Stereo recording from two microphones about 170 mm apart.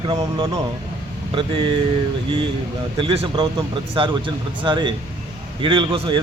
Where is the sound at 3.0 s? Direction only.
30° right (ahead or behind).